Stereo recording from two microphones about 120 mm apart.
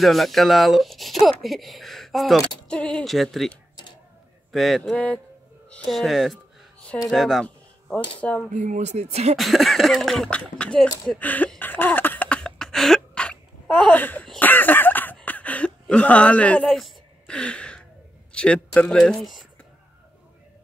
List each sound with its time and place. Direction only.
0.0 s speech: centre (ahead or behind)
8.2 s speech: 10° left (ahead or behind)
8.5 s speech: 90° right; by 9.4 s 60° right (ahead or behind)
9.4 s speech: centre (ahead or behind)